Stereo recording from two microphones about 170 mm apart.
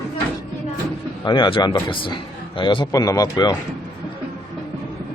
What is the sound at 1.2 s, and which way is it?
Speech, 25° left (ahead or behind).